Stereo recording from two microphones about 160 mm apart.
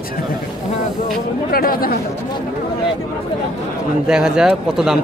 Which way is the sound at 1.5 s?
65° left (ahead or behind).